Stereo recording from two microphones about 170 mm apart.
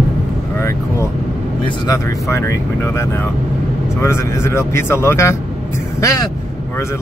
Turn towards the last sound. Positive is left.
turn(degrees=20)  # may be behind; listen again after turning